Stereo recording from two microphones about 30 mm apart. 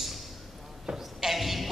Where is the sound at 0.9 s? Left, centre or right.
Right.